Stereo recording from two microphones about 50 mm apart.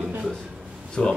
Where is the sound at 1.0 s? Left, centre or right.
Centre.